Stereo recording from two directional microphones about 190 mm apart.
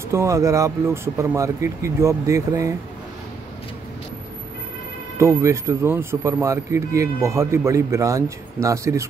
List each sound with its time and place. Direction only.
0.1 s speech: 15° right (ahead or behind)
5.1 s speech: 15° right (ahead or behind)